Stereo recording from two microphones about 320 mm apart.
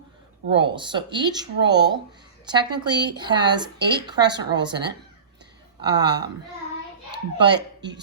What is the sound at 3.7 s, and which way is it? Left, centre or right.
Speech, right.